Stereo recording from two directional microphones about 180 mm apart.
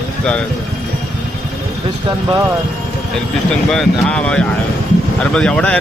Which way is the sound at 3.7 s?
5° left (ahead or behind).